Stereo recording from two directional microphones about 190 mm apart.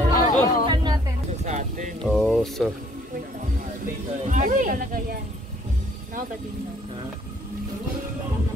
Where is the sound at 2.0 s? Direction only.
Centre (ahead or behind).